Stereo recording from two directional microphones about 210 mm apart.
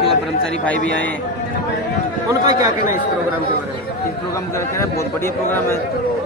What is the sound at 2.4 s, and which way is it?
Speech, 15° right (ahead or behind).